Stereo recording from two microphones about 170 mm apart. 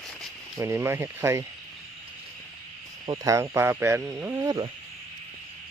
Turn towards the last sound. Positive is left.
turn(degrees=-20)  # may be behind; listen again after turning